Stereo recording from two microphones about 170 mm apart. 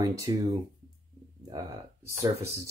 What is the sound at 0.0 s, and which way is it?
Speech, 20° right (ahead or behind).